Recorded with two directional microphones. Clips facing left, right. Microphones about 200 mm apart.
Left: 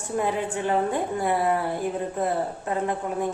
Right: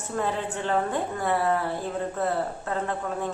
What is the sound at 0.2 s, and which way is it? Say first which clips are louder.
A woman's voice: left 2 dB; 15° left (ahead or behind).